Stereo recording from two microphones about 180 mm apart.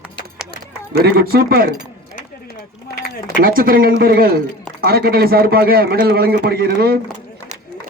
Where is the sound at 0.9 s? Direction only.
60° right (ahead or behind).